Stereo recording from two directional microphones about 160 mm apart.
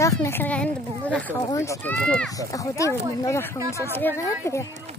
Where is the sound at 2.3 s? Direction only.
20° left (ahead or behind).